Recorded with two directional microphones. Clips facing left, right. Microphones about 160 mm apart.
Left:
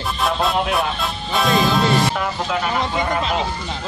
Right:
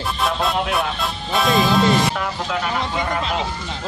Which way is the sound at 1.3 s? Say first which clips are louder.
Even; centre (ahead or behind).